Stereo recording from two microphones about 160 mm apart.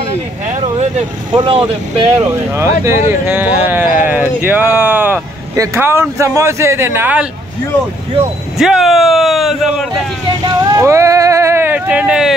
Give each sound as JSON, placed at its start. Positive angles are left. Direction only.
{"t": 1.3, "sound": "speech", "side_deg": -30}
{"t": 2.1, "sound": "speech", "side_deg": -15}
{"t": 8.5, "sound": "speech", "side_deg": 0}
{"t": 10.4, "sound": "a sound", "side_deg": -20}